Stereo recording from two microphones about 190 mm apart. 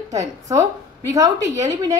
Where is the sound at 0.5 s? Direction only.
15° right (ahead or behind).